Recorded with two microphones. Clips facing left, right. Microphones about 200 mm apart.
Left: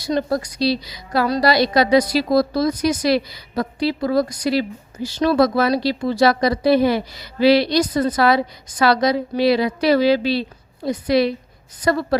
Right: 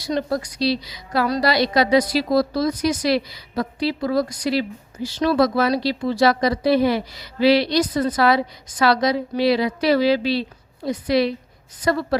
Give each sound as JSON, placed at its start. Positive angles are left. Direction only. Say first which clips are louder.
{"t": 0.2, "sound": "a woman's voice", "louder": "left 2 dB", "side_deg": 40}